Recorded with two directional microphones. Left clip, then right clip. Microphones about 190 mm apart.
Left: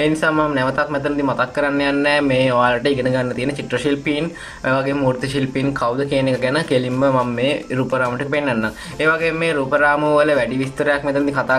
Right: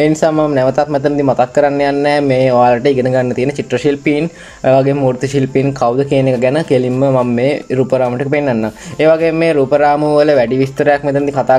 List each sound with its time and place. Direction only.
0.0 s speech: 30° right (ahead or behind)